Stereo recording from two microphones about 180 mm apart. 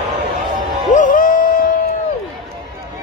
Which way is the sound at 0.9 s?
50° left (ahead or behind).